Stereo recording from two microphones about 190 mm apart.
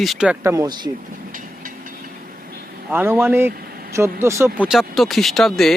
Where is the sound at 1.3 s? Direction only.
45° right (ahead or behind).